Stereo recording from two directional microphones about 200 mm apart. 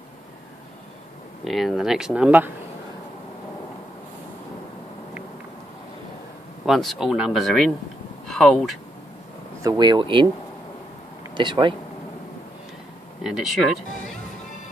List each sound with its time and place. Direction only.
1.4 s speech: centre (ahead or behind)
6.6 s speech: centre (ahead or behind)
9.6 s speech: 20° right (ahead or behind)
11.3 s speech: 25° right (ahead or behind)
13.2 s speech: centre (ahead or behind)